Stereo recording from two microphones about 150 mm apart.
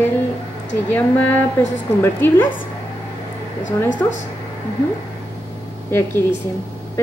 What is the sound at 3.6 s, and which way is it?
Speech, 55° left (ahead or behind).